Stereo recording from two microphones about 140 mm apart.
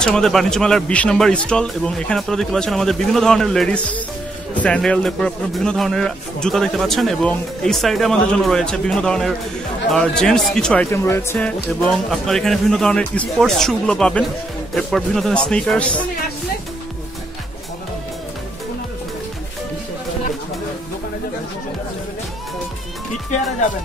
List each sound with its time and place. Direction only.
0.0 s a man's voice: 5° left (ahead or behind)
10.9 s speech: 20° left (ahead or behind)
12.1 s a man's voice: 5° left (ahead or behind)